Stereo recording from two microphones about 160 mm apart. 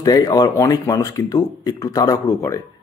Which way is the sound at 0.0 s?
25° left (ahead or behind).